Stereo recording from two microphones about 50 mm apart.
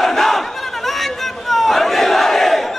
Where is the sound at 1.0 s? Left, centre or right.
Centre.